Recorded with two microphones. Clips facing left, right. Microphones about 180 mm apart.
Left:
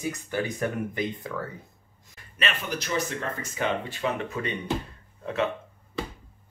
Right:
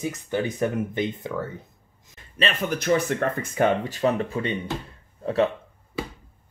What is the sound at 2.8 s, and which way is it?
Speech, 55° right (ahead or behind).